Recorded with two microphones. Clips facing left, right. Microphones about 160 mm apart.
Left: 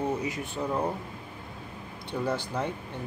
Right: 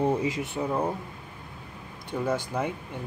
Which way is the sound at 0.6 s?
10° right (ahead or behind).